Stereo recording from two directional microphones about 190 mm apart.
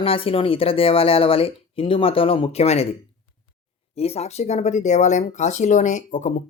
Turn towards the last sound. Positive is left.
turn(degrees=40)  # may be behind; listen again after turning